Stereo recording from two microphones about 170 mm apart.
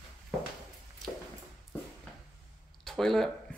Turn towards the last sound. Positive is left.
turn(degrees=0)  # may be behind; listen again after turning